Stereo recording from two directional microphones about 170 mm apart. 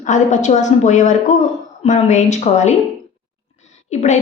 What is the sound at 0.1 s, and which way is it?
A woman's voice, 45° left (ahead or behind).